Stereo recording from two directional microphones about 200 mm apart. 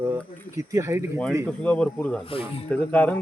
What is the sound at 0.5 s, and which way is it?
Speech, 15° right (ahead or behind).